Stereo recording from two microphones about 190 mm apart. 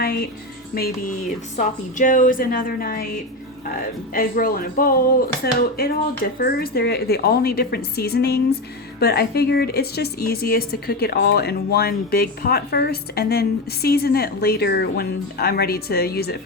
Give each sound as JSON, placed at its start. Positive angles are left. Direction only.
{"t": 0.0, "sound": "a woman's voice", "side_deg": 55}
{"t": 1.5, "sound": "a woman's voice", "side_deg": 40}
{"t": 4.1, "sound": "a woman's voice", "side_deg": 50}